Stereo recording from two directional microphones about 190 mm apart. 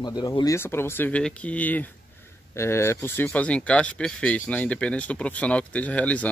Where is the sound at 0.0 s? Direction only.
20° left (ahead or behind).